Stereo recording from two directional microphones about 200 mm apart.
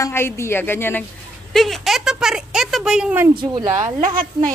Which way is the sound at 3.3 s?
20° right (ahead or behind).